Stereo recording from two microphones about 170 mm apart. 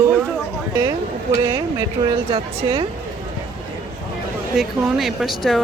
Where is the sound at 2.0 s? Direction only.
30° right (ahead or behind).